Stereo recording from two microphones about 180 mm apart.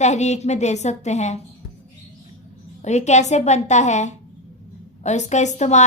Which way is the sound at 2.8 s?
40° left (ahead or behind).